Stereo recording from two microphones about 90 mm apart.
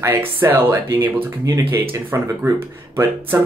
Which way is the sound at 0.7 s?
35° right (ahead or behind).